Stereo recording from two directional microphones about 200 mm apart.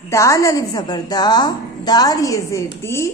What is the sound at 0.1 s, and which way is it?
A woman's voice, 15° left (ahead or behind).